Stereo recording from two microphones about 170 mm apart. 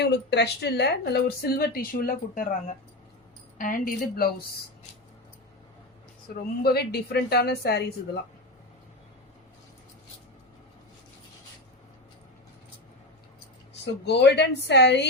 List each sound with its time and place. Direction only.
0.0 s speech: 80° left; by 4.4 s 60° left (ahead or behind)
6.2 s a woman's voice: 60° left (ahead or behind)
13.8 s speech: 85° left